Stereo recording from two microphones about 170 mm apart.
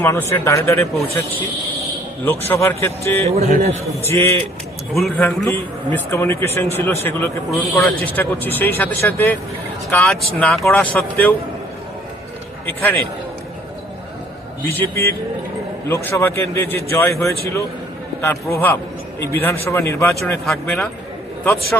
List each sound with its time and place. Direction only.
0.0 s a man's voice: 15° left (ahead or behind)
2.5 s a man's voice: 15° left (ahead or behind)
3.2 s a man's voice: 40° right (ahead or behind)
4.0 s a man's voice: 15° left (ahead or behind)
4.9 s speech: centre (ahead or behind)
5.2 s a man's voice: 10° left (ahead or behind)
12.6 s a man's voice: 10° left (ahead or behind)
14.7 s a man's voice: 15° left (ahead or behind)
20.1 s speech: centre (ahead or behind)